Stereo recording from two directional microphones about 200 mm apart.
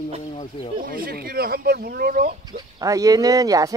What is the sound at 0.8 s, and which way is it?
Speech, 45° right (ahead or behind).